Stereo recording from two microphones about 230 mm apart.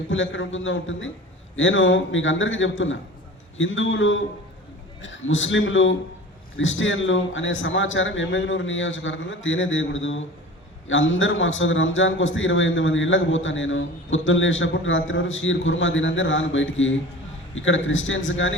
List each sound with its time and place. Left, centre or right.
0.1 s a man's voice: left